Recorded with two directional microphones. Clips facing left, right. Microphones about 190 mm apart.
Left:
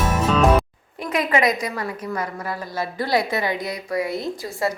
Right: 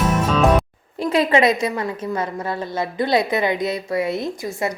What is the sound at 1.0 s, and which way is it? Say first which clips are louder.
A woman's voice: right 4 dB; 30° right (ahead or behind).